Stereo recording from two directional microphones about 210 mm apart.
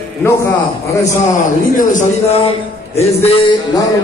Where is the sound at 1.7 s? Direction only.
30° left (ahead or behind).